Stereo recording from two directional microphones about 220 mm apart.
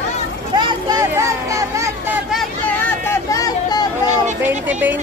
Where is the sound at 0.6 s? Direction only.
15° right (ahead or behind).